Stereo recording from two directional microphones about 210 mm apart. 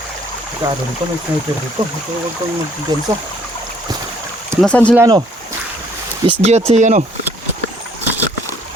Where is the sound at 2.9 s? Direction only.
20° right (ahead or behind).